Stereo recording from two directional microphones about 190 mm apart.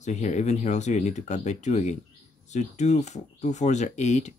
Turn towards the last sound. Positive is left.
turn(degrees=35)  # may be behind; listen again after turning